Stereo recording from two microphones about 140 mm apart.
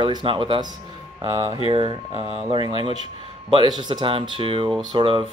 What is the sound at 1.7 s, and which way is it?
Speech, 40° right (ahead or behind).